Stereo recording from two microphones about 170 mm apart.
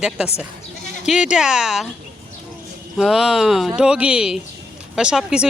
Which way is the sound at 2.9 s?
Centre (ahead or behind).